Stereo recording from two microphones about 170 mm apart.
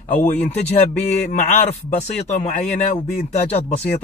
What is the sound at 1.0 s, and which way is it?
Speech, 45° left (ahead or behind).